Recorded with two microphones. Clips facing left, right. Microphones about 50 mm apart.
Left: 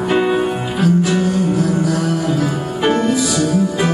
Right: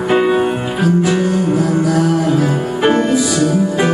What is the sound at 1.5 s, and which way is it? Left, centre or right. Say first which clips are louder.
Music: right 3 dB; right.